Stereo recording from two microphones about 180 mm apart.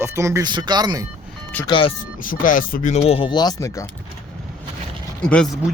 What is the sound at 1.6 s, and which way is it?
Speech, 25° left (ahead or behind).